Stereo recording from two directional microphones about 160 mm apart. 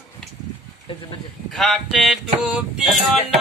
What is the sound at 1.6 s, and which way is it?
Speech, centre (ahead or behind).